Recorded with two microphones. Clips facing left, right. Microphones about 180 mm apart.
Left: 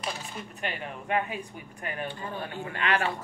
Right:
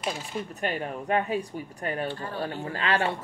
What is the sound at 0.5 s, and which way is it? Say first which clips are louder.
Speech: right 4 dB; 40° right (ahead or behind).